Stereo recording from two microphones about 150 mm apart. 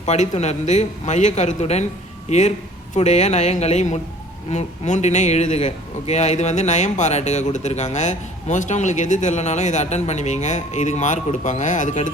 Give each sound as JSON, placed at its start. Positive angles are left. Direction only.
{"t": 0.0, "sound": "a man's voice", "side_deg": 50}